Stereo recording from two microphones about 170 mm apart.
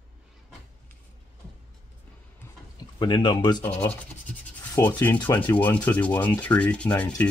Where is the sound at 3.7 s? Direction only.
40° left (ahead or behind).